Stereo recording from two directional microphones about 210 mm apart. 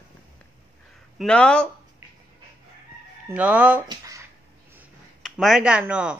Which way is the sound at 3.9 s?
15° right (ahead or behind).